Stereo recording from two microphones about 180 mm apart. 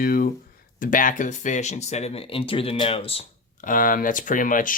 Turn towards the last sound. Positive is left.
turn(degrees=50)  # may be behind; listen again after turning